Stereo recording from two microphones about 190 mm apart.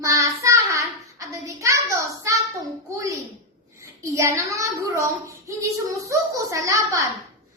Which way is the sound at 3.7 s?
15° right (ahead or behind).